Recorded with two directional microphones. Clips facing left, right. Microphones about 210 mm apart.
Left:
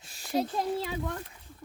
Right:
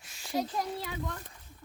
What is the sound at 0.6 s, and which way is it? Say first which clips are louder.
Speech: left 5 dB; 25° left (ahead or behind).